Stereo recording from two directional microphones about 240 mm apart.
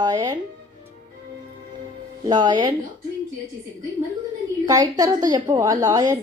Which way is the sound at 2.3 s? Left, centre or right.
Centre.